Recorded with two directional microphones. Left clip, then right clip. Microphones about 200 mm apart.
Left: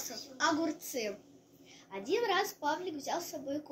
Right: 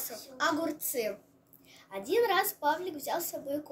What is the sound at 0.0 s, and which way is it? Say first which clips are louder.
A woman's voice: right 1 dB; 20° right (ahead or behind).